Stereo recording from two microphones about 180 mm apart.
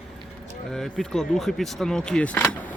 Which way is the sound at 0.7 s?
5° left (ahead or behind).